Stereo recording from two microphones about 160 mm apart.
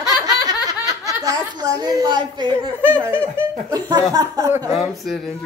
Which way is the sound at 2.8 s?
10° right (ahead or behind).